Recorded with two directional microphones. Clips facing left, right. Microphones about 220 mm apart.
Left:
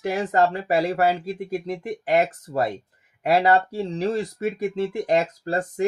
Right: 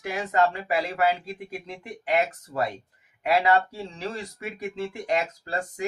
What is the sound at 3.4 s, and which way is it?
Speech, 35° left (ahead or behind).